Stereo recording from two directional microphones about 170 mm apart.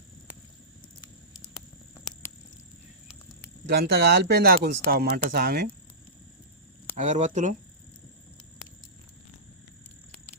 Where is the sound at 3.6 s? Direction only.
70° right (ahead or behind).